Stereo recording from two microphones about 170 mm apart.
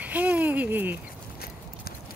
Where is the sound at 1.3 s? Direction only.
65° left (ahead or behind).